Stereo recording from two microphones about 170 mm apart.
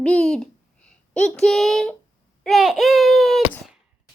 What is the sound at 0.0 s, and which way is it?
A child's voice, 5° left (ahead or behind).